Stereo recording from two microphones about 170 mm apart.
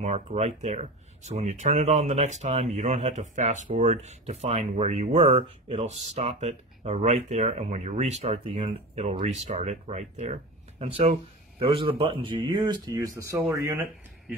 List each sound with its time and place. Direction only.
0.0 s speech: 40° right (ahead or behind)
11.6 s speech: 30° right (ahead or behind)